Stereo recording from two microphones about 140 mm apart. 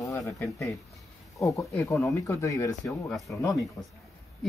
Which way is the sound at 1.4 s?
25° left (ahead or behind).